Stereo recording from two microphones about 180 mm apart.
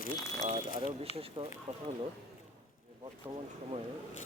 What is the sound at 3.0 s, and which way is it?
Speech, 25° right (ahead or behind).